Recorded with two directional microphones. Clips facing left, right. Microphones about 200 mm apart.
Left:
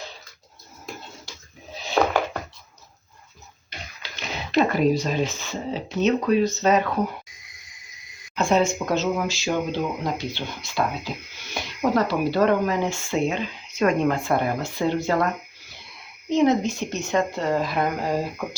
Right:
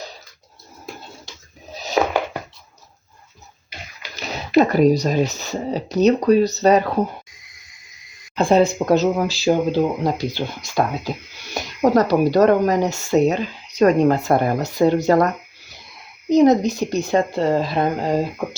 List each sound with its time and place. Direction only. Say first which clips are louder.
1.7 s a sound: right 4 dB; 40° right (ahead or behind)
4.2 s speech: right 5 dB; 40° right (ahead or behind)
8.4 s speech: right 5 dB; 35° right (ahead or behind)
16.3 s speech: right 6 dB; 40° right (ahead or behind); by 18.4 s 25° right (ahead or behind)